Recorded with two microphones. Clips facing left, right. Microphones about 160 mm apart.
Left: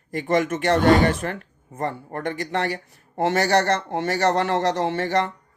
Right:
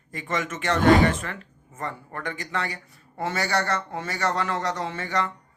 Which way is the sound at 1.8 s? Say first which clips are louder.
Left 6 dB; 55° left (ahead or behind).